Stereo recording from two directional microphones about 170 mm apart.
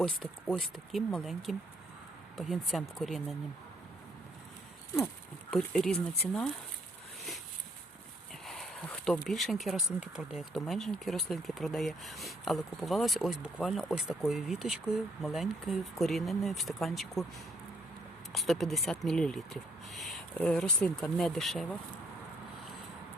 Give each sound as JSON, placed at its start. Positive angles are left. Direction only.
{"t": 0.4, "sound": "speech", "side_deg": 5}
{"t": 5.5, "sound": "speech", "side_deg": 5}
{"t": 8.4, "sound": "a sound", "side_deg": 0}
{"t": 9.2, "sound": "speech", "side_deg": 0}
{"t": 18.3, "sound": "speech", "side_deg": 0}